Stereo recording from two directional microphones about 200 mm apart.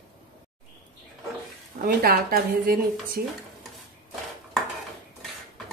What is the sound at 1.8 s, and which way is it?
Speech, 50° right (ahead or behind).